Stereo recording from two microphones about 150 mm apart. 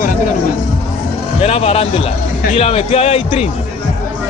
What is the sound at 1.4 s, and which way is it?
A man's voice, 40° left (ahead or behind).